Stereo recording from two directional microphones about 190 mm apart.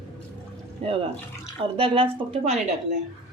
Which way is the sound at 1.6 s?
30° right (ahead or behind).